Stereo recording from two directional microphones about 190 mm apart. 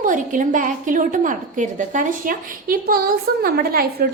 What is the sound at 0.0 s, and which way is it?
A woman's voice, 45° right (ahead or behind).